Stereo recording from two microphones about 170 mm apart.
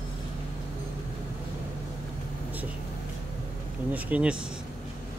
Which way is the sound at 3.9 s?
5° right (ahead or behind).